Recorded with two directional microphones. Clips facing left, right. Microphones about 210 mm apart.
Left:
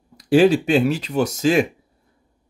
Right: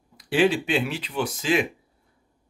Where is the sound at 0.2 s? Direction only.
40° left (ahead or behind).